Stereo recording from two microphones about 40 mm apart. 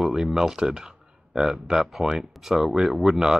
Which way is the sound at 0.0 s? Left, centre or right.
Centre.